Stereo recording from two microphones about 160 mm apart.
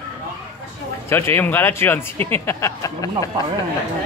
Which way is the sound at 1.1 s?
15° left (ahead or behind).